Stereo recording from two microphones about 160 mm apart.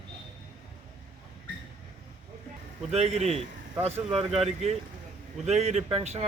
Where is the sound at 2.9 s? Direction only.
40° right (ahead or behind).